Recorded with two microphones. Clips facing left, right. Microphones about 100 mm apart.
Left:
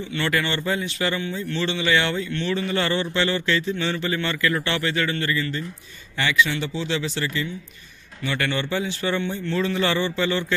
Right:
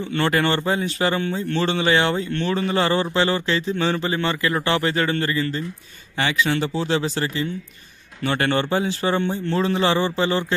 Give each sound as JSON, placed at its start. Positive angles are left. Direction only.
{"t": 0.1, "sound": "a man's voice", "side_deg": -40}